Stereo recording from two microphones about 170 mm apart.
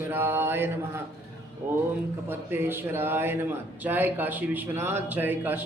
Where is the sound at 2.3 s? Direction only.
15° right (ahead or behind).